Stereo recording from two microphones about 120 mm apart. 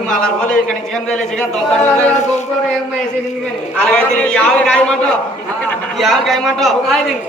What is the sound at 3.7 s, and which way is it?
A man's voice, 10° left (ahead or behind).